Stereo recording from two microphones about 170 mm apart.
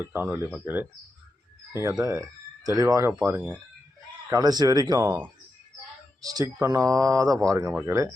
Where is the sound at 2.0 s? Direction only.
20° right (ahead or behind).